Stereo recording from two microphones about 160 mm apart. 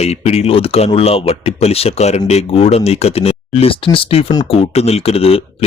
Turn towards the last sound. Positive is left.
turn(degrees=40)  # may be behind; listen again after turning